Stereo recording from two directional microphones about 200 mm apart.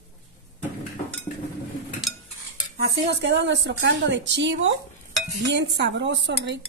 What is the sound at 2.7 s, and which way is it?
A woman's voice, 55° right (ahead or behind).